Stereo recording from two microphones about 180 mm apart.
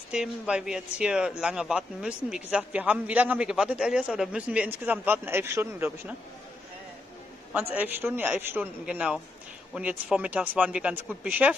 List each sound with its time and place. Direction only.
0.1 s speech: 5° right (ahead or behind)
7.5 s speech: 10° right (ahead or behind)